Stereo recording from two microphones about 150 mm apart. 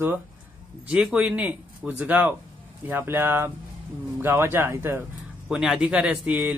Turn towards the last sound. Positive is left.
turn(degrees=-10)  # may be behind; listen again after turning